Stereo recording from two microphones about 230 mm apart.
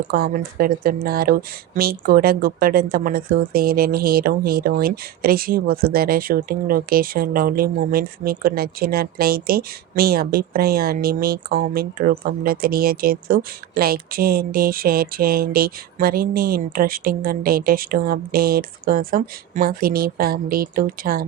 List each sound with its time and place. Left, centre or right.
0.1 s speech: right